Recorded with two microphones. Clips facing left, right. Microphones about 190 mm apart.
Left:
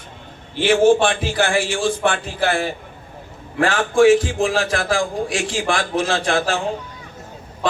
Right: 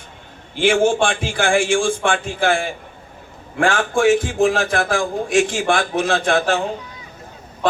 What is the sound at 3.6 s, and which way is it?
A man's voice, 50° right (ahead or behind).